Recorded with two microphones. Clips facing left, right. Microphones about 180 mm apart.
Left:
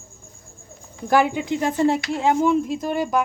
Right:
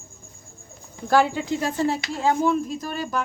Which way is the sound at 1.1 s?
15° left (ahead or behind).